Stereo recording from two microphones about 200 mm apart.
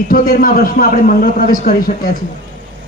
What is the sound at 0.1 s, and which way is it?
A man's voice, 45° left (ahead or behind).